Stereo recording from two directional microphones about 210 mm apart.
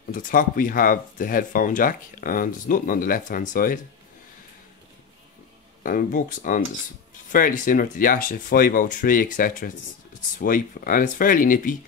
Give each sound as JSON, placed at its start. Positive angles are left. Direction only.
{"t": 0.1, "sound": "speech", "side_deg": 40}
{"t": 5.9, "sound": "speech", "side_deg": 40}